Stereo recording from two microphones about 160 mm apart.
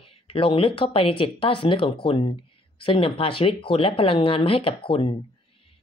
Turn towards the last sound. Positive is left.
turn(degrees=35)  # may be behind; listen again after turning